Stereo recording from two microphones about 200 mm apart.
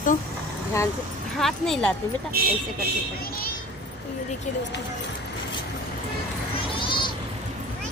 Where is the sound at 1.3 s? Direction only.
Centre (ahead or behind).